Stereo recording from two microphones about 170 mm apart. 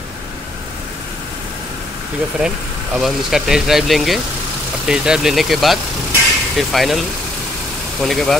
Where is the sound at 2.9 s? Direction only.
Centre (ahead or behind).